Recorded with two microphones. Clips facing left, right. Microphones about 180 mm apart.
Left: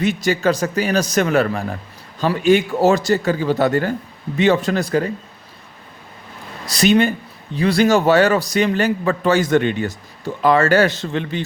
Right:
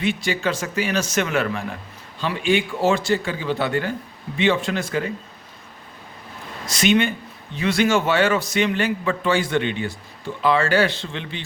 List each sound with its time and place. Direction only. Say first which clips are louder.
0.0 s a man's voice: left 5 dB; 40° left (ahead or behind)
6.7 s a man's voice: left 4 dB; 35° left (ahead or behind)